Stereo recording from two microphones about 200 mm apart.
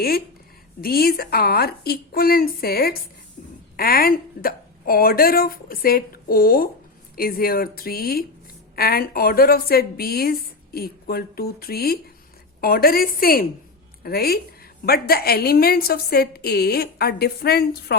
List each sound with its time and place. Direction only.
0.8 s a woman's voice: 50° left (ahead or behind)